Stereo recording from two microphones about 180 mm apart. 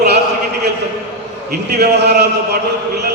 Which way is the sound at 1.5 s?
65° right (ahead or behind).